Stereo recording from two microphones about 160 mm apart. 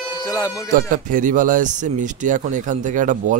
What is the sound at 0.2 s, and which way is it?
Speech, 20° left (ahead or behind).